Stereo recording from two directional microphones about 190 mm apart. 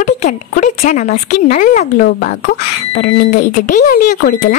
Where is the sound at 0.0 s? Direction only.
40° left (ahead or behind).